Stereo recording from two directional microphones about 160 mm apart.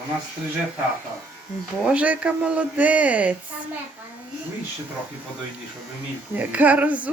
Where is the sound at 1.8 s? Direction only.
10° right (ahead or behind).